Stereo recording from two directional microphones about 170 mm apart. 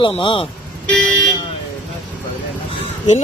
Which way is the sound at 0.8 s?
5° left (ahead or behind).